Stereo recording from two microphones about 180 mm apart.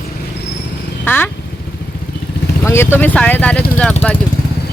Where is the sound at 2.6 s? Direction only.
15° left (ahead or behind).